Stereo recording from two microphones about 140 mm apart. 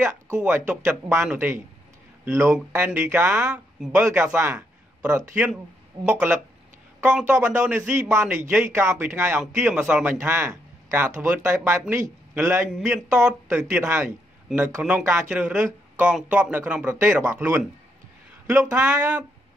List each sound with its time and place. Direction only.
0.4 s a man's voice: 15° right (ahead or behind)
18.7 s speech: 10° right (ahead or behind)